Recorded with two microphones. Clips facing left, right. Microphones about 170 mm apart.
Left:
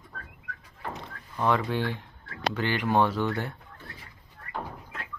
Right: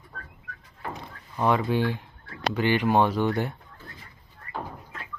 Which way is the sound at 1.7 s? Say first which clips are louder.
Right 4 dB; 10° right (ahead or behind).